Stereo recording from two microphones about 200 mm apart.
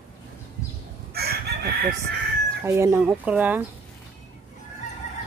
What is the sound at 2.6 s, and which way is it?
Speech, 15° right (ahead or behind).